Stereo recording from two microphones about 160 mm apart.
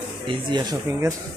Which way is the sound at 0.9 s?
15° right (ahead or behind).